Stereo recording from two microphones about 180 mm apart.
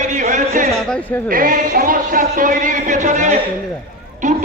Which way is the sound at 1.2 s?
50° right (ahead or behind).